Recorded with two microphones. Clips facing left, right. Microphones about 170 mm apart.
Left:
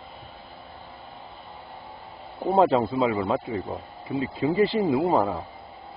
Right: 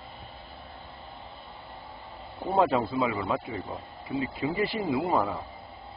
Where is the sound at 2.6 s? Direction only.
20° left (ahead or behind).